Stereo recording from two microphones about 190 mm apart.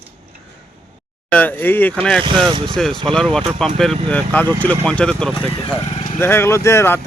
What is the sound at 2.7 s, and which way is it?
Speech, centre (ahead or behind).